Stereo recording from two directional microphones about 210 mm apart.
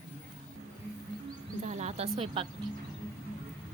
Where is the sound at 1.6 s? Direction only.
35° right (ahead or behind).